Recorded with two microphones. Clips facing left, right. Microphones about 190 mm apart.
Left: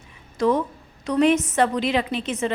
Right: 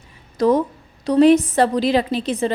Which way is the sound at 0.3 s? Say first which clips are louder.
Right 4 dB; 35° right (ahead or behind).